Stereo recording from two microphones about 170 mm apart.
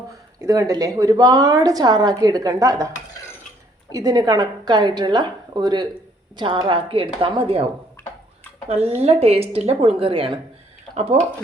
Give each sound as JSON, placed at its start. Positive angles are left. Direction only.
{"t": 0.3, "sound": "a woman's voice", "side_deg": -20}
{"t": 3.9, "sound": "a woman's voice", "side_deg": -20}
{"t": 8.7, "sound": "a woman's voice", "side_deg": -35}